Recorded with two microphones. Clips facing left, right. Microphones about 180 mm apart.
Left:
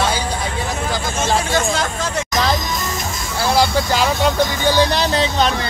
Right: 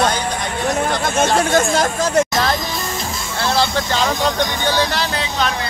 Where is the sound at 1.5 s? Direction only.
45° right (ahead or behind).